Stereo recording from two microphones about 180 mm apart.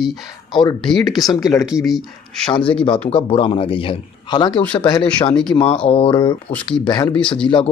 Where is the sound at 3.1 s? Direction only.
30° left (ahead or behind).